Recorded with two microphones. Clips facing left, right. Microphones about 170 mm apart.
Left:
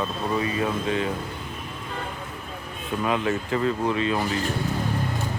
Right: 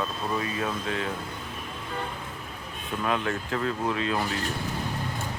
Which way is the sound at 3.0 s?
5° left (ahead or behind).